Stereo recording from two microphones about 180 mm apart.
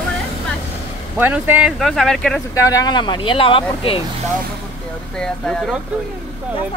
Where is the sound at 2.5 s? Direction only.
20° left (ahead or behind).